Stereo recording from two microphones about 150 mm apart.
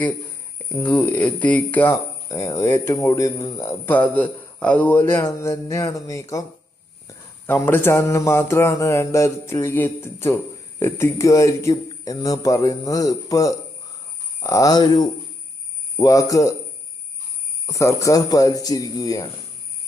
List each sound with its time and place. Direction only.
0.7 s speech: 10° left (ahead or behind)
7.4 s a man's voice: 15° left (ahead or behind)
17.7 s a man's voice: 20° left (ahead or behind)